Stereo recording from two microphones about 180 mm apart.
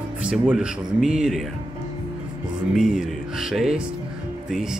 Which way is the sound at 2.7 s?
5° right (ahead or behind).